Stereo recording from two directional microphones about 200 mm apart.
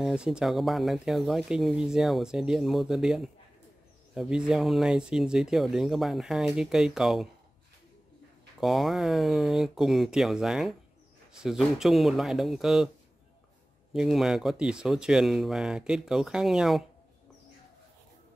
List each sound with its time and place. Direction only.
0.0 s speech: 5° right (ahead or behind)
8.5 s speech: centre (ahead or behind)
13.9 s speech: centre (ahead or behind)